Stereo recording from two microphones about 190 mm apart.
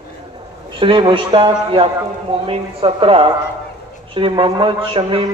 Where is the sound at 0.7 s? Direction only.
25° right (ahead or behind).